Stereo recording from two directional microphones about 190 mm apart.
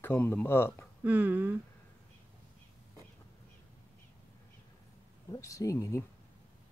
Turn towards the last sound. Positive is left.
turn(degrees=15)  # may be behind; listen again after turning